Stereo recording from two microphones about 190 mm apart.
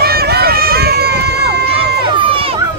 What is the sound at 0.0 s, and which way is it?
Run, 55° right (ahead or behind).